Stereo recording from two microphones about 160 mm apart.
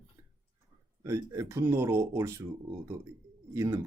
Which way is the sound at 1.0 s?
20° right (ahead or behind).